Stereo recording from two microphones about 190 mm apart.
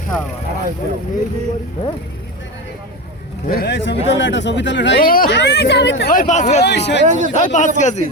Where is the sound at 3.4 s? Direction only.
55° left (ahead or behind); by 5.0 s 70° left (ahead or behind).